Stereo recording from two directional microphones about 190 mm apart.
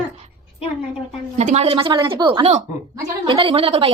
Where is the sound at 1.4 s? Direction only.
35° right (ahead or behind).